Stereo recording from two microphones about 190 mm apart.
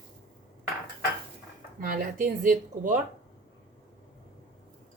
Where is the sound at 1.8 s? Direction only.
45° right (ahead or behind).